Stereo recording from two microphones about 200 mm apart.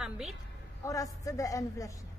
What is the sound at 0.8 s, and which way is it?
A man's voice, 15° left (ahead or behind).